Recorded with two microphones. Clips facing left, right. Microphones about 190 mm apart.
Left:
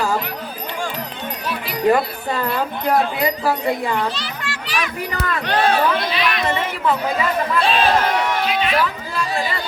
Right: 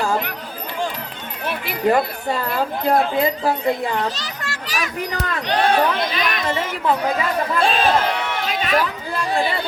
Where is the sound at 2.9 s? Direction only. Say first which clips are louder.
Even; 25° right (ahead or behind).